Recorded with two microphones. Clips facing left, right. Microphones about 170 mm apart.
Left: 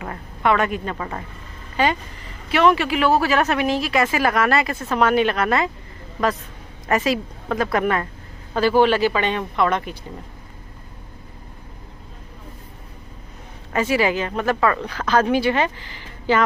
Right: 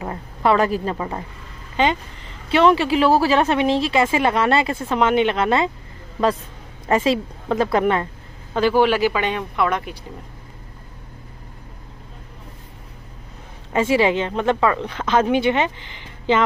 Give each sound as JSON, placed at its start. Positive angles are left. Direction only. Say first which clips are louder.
{"t": 0.0, "sound": "a woman's voice", "louder": "right 2 dB", "side_deg": -30}
{"t": 0.9, "sound": "a woman's voice", "louder": "right 2 dB", "side_deg": -20}
{"t": 6.9, "sound": "a woman's voice", "louder": "right 2 dB", "side_deg": -25}
{"t": 8.5, "sound": "speech", "louder": "even", "side_deg": -15}
{"t": 13.7, "sound": "a woman's voice", "louder": "right 2 dB", "side_deg": -25}